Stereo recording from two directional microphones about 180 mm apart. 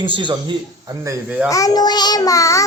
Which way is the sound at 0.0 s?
25° right (ahead or behind).